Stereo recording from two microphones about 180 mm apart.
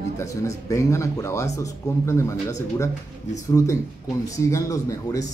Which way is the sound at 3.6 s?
15° left (ahead or behind).